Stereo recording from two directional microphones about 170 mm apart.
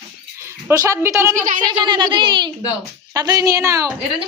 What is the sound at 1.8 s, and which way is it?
A woman's voice, 25° right (ahead or behind).